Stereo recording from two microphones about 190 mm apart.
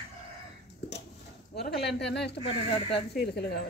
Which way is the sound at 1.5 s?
60° left (ahead or behind).